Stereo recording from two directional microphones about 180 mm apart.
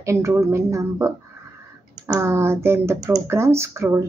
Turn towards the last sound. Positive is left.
turn(degrees=-15)  # may be behind; listen again after turning